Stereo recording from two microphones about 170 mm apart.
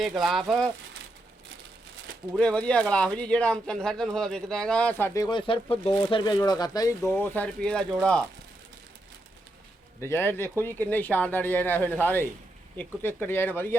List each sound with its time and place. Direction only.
0.2 s speech: centre (ahead or behind)
2.3 s speech: 5° left (ahead or behind); by 6.9 s 20° left (ahead or behind)
7.1 s speech: 10° left (ahead or behind)
10.0 s speech: 15° left (ahead or behind)